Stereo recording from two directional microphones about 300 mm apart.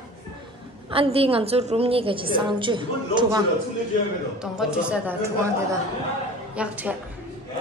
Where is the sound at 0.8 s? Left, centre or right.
Centre.